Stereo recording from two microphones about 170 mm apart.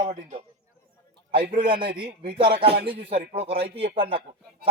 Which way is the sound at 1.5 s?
30° right (ahead or behind).